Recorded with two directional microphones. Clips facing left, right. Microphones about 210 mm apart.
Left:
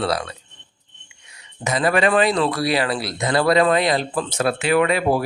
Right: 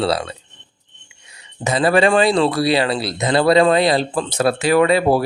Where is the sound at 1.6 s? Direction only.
30° right (ahead or behind).